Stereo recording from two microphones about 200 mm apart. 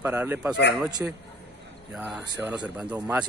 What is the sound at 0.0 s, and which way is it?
Speech, 10° right (ahead or behind).